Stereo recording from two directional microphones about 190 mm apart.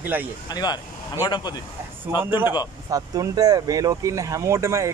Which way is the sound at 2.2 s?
10° right (ahead or behind).